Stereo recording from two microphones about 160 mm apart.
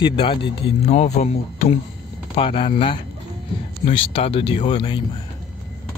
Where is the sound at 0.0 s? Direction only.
30° left (ahead or behind).